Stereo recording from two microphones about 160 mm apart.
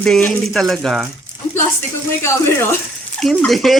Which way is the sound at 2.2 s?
15° left (ahead or behind).